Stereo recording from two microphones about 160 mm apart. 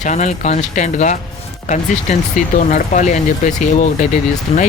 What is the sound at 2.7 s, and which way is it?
Speech, 50° left (ahead or behind).